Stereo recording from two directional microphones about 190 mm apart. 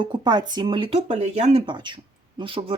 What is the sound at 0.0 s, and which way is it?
Speech, 25° right (ahead or behind).